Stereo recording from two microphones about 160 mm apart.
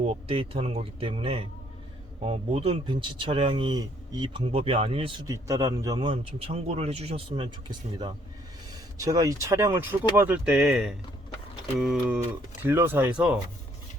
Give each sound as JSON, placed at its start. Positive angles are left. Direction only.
{"t": 0.3, "sound": "speech", "side_deg": -35}
{"t": 5.2, "sound": "speech", "side_deg": -20}